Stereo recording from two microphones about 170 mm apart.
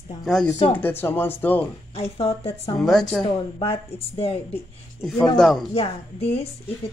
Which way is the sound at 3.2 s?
35° left (ahead or behind).